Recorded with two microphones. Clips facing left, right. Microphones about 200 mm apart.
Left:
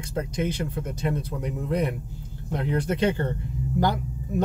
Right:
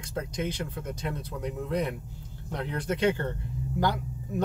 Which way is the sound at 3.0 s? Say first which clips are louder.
Even; 30° left (ahead or behind).